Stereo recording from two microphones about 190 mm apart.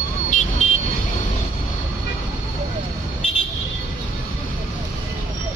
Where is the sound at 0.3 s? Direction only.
40° left (ahead or behind).